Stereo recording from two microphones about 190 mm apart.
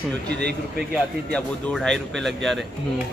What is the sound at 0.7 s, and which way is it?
Speech, centre (ahead or behind).